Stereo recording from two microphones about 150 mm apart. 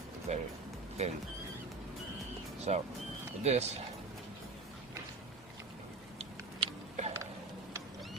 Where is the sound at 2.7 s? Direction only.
50° right (ahead or behind).